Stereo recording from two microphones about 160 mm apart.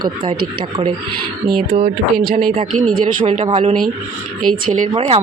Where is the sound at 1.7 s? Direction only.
60° right (ahead or behind).